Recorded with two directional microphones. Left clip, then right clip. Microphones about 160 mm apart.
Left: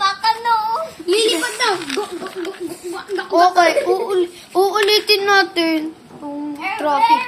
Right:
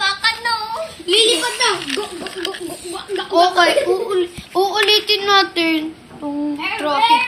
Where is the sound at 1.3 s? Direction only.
40° left (ahead or behind).